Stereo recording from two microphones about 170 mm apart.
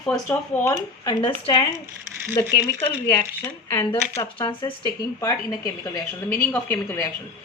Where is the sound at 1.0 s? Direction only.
30° left (ahead or behind).